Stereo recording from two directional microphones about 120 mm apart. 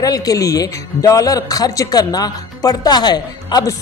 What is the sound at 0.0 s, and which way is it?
Speech, 30° left (ahead or behind).